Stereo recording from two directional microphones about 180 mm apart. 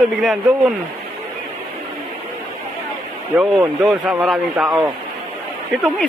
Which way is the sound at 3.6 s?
15° right (ahead or behind).